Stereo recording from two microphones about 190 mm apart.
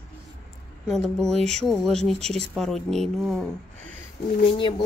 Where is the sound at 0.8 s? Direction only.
Centre (ahead or behind).